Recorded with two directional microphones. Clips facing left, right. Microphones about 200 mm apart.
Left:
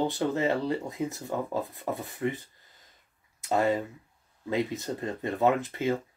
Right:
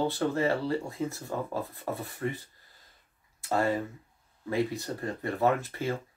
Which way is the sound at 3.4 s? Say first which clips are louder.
Left 2 dB; 20° left (ahead or behind).